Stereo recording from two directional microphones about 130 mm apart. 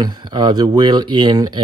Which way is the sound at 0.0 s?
35° right (ahead or behind).